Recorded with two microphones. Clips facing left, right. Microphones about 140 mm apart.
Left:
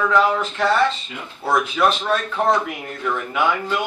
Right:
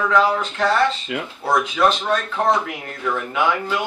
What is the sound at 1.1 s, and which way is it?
Speech, 80° right.